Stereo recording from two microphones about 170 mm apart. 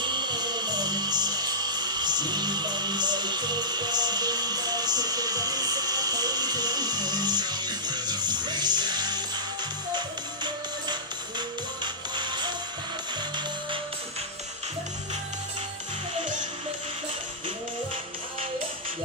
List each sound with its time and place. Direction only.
0.0 s music: 25° right (ahead or behind)